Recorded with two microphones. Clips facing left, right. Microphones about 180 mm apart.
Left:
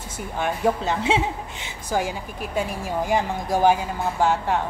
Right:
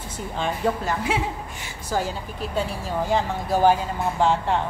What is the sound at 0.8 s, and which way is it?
Speech, 25° left (ahead or behind).